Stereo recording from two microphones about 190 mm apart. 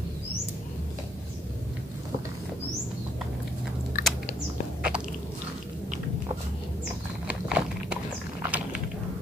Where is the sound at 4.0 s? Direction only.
50° left (ahead or behind).